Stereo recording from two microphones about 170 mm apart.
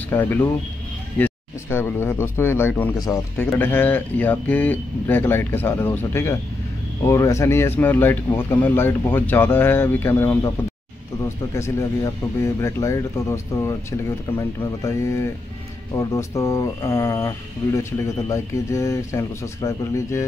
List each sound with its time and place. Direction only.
0.1 s speech: 10° left (ahead or behind)
14.8 s speech: 15° left (ahead or behind)